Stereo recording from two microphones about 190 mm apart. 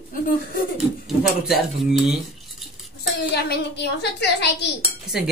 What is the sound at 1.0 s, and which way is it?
Speech, centre (ahead or behind).